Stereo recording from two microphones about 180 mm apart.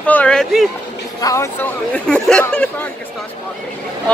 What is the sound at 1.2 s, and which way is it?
Speech, 15° left (ahead or behind).